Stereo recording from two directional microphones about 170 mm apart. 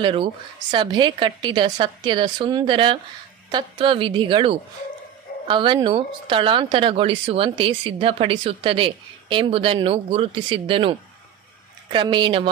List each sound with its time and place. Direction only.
0.0 s a woman's voice: 30° right (ahead or behind)